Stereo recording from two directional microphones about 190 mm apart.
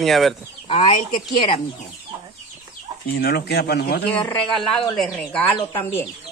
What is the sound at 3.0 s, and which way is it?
Speech, 55° left (ahead or behind).